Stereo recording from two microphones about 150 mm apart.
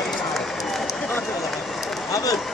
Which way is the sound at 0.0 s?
Centre (ahead or behind).